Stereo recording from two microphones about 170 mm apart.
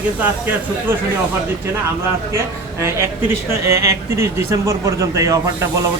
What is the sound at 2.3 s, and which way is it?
Speech, 15° right (ahead or behind).